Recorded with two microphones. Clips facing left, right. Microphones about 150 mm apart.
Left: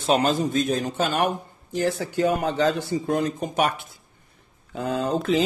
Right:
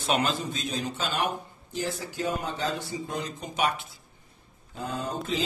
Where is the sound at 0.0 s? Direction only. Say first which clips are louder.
Left 6 dB; 40° left (ahead or behind); by 3.0 s 75° left (ahead or behind).